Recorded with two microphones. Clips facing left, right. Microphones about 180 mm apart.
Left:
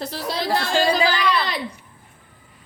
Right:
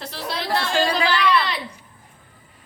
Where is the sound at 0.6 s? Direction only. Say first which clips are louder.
Left 1 dB; 40° left (ahead or behind).